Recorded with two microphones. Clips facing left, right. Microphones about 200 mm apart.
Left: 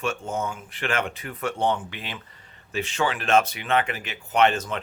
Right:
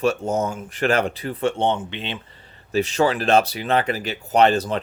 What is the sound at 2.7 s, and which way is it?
Speech, 40° right (ahead or behind).